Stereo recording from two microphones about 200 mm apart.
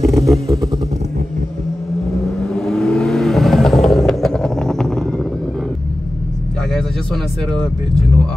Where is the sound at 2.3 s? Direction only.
5° left (ahead or behind).